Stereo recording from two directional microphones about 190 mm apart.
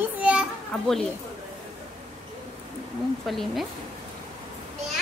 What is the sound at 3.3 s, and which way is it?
Speech, centre (ahead or behind).